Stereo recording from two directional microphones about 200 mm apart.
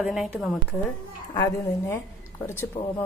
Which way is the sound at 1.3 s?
15° left (ahead or behind).